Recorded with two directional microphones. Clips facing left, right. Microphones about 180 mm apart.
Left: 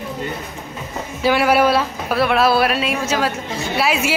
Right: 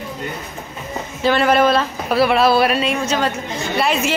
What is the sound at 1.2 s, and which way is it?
A woman's voice, 10° left (ahead or behind).